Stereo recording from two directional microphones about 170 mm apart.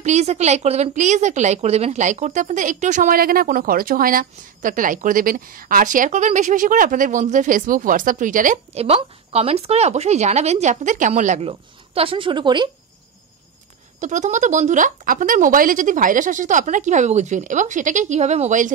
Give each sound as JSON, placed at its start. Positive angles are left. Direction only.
{"t": 0.0, "sound": "a woman's voice", "side_deg": -40}
{"t": 8.8, "sound": "speech", "side_deg": -35}
{"t": 13.9, "sound": "a woman's voice", "side_deg": -45}